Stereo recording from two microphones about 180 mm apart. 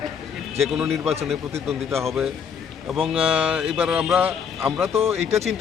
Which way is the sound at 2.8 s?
Centre (ahead or behind).